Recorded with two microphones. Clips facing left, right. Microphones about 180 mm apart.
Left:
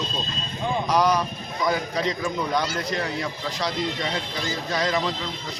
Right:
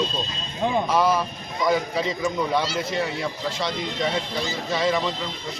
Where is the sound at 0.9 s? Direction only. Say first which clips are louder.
Even; 5° right (ahead or behind).